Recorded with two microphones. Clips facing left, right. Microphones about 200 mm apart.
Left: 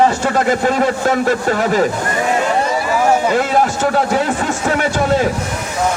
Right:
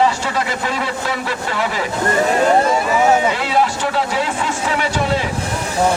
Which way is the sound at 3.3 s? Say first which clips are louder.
Left 3 dB; 45° left (ahead or behind).